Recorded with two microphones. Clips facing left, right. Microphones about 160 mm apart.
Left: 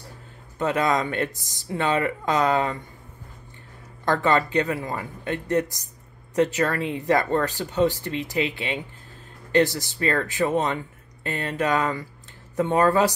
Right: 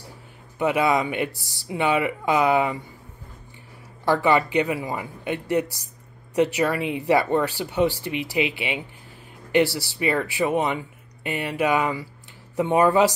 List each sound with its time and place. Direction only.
0.6 s speech: 15° right (ahead or behind)
1.3 s speech: 20° left (ahead or behind)
1.7 s speech: 15° right (ahead or behind)
4.0 s speech: 10° right (ahead or behind)
9.7 s speech: 20° left (ahead or behind)
9.9 s speech: 15° right (ahead or behind)